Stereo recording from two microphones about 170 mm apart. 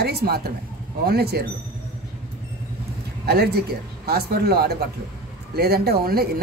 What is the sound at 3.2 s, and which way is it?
Speech, 70° right (ahead or behind).